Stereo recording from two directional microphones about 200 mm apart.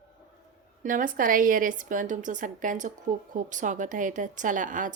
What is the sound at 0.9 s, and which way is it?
A woman's voice, 40° right (ahead or behind).